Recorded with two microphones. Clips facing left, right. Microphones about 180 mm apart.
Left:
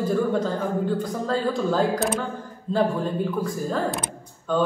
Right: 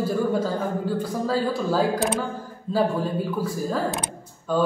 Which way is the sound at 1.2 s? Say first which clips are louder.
Left 1 dB; 5° right (ahead or behind).